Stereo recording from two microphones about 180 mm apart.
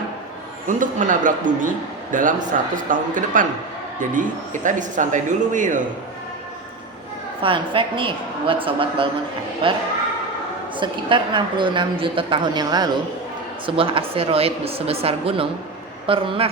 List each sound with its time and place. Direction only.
0.7 s a man's voice: 45° right (ahead or behind)
7.4 s a woman's voice: 30° right (ahead or behind)